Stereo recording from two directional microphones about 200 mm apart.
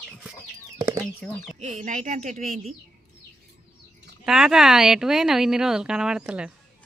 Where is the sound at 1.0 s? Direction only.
Centre (ahead or behind).